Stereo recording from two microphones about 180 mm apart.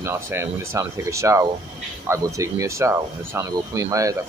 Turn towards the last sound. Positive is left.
turn(degrees=-20)  # may be behind; listen again after turning